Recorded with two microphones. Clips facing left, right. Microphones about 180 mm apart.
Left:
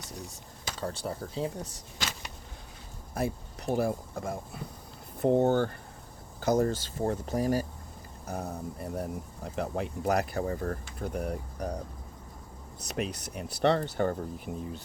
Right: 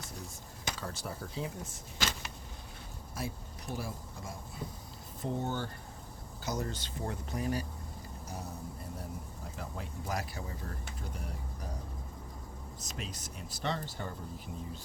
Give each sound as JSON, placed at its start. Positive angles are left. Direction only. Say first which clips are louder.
{"t": 0.8, "sound": "speech", "louder": "left 6 dB", "side_deg": 30}
{"t": 3.2, "sound": "speech", "louder": "left 9 dB", "side_deg": 55}
{"t": 8.3, "sound": "speech", "louder": "left 8 dB", "side_deg": 60}
{"t": 12.8, "sound": "speech", "louder": "left 11 dB", "side_deg": 65}